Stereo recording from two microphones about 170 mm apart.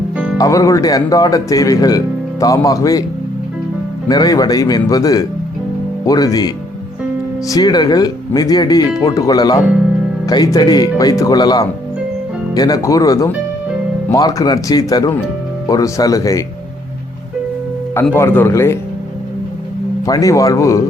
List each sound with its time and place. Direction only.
0.3 s speech: 20° left (ahead or behind)
4.1 s speech: 20° left (ahead or behind)
18.1 s speech: 15° left (ahead or behind)
20.1 s speech: 20° left (ahead or behind)